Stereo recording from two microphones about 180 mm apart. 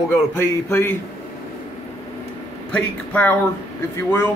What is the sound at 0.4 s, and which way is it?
Speech, 15° left (ahead or behind).